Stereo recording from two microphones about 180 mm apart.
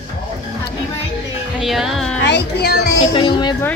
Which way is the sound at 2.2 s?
65° left (ahead or behind).